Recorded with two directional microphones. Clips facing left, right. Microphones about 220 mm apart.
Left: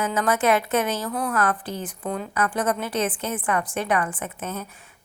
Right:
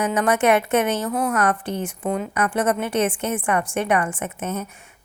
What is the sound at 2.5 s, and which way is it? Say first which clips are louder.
Speech: right 4 dB; 25° right (ahead or behind).